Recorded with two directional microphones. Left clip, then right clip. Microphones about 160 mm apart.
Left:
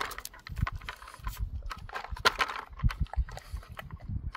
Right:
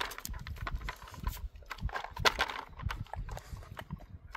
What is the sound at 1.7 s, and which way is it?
Horse, 10° right (ahead or behind).